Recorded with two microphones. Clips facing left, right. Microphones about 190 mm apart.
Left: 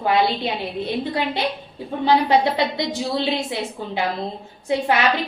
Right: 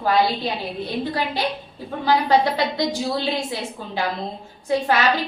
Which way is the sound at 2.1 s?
25° left (ahead or behind).